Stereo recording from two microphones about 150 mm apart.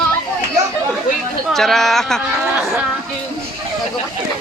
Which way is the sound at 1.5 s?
5° left (ahead or behind).